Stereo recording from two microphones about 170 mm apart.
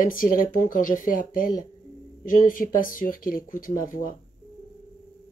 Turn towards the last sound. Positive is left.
turn(degrees=55)  # may be behind; listen again after turning